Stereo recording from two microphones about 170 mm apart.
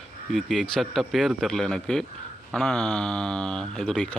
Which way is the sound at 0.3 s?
Centre (ahead or behind).